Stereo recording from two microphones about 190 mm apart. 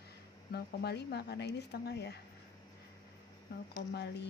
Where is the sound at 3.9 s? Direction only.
60° left (ahead or behind).